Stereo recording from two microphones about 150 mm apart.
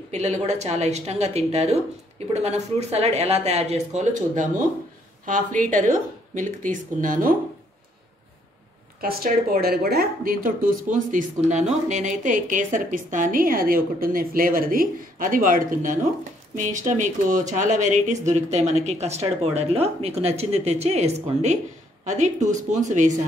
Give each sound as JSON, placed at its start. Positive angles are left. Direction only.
{"t": 0.1, "sound": "speech", "side_deg": -50}
{"t": 9.0, "sound": "a woman's voice", "side_deg": -80}